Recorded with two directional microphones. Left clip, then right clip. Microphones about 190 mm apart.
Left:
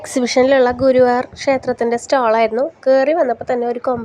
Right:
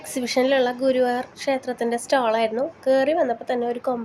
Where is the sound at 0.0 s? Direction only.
30° left (ahead or behind).